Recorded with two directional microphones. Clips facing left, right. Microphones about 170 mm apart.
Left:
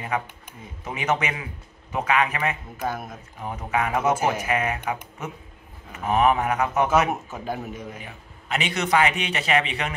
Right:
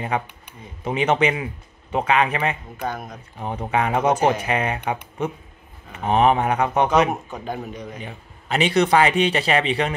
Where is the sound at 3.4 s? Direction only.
30° right (ahead or behind).